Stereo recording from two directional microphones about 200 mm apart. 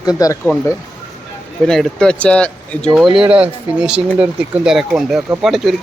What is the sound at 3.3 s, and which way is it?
Speech, 5° right (ahead or behind).